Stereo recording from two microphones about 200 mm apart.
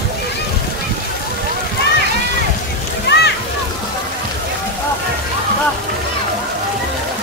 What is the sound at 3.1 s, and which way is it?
Splash, 60° left (ahead or behind).